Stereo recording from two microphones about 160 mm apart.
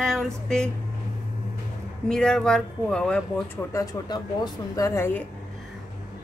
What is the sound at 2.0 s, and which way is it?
Speech, 5° left (ahead or behind).